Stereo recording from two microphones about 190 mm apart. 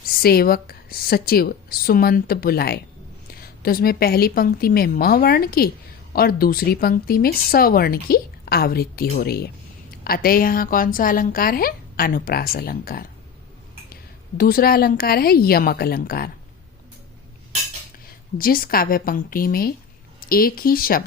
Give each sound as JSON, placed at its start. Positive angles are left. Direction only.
{"t": 0.2, "sound": "speech", "side_deg": 55}
{"t": 18.3, "sound": "speech", "side_deg": 50}